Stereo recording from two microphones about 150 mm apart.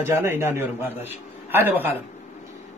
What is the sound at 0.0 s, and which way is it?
A man's voice, 15° right (ahead or behind).